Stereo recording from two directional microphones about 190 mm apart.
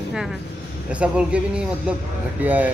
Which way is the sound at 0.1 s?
Centre (ahead or behind).